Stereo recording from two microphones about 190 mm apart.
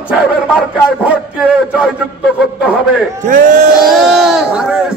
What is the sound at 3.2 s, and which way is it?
Speech, 45° right (ahead or behind).